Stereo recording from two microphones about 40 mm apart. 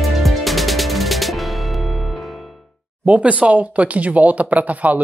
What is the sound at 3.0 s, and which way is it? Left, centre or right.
Speech, right.